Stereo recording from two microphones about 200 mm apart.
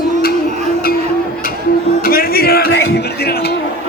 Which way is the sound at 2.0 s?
45° left (ahead or behind).